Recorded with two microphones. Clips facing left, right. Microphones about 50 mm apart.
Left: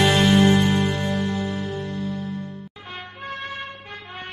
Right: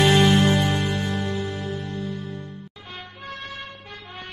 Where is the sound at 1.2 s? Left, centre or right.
Left.